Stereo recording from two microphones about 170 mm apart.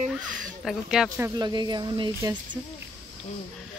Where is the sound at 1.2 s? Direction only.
25° right (ahead or behind).